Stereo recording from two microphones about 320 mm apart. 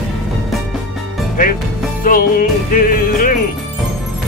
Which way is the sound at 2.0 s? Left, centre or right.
Left.